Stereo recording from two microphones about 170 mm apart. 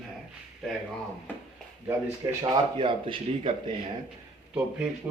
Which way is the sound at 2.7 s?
30° right (ahead or behind).